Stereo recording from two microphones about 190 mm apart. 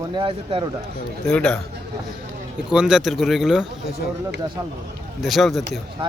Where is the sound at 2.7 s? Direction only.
5° right (ahead or behind).